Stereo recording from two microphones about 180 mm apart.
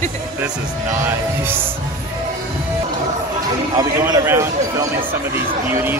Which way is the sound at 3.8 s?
20° right (ahead or behind).